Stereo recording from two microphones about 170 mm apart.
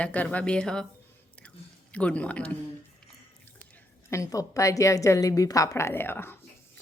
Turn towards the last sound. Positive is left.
turn(degrees=15)  # may be behind; listen again after turning